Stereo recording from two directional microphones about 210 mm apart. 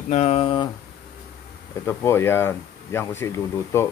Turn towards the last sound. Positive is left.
turn(degrees=15)  # may be behind; listen again after turning